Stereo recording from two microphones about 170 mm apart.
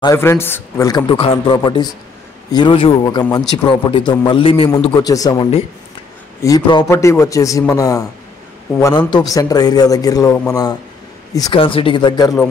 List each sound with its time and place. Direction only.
0.0 s speech: 15° left (ahead or behind); by 4.6 s 30° left (ahead or behind)
5.0 s speech: 20° left (ahead or behind)